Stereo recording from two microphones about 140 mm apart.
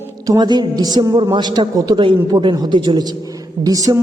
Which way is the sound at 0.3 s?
30° right (ahead or behind).